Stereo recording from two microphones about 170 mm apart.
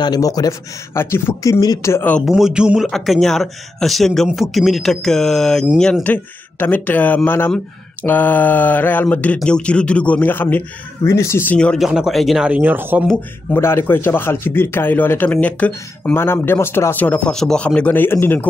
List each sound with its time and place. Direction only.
0.0 s a man's voice: 20° left (ahead or behind)
2.2 s speech: 5° right (ahead or behind)
13.5 s a man's voice: 15° left (ahead or behind)